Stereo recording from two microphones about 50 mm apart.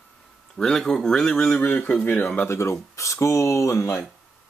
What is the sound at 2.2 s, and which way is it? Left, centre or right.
Speech, left.